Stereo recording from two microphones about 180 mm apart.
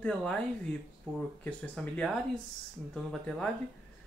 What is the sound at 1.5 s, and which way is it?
Speech, 5° left (ahead or behind).